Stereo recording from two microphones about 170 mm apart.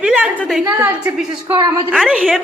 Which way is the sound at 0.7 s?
20° right (ahead or behind).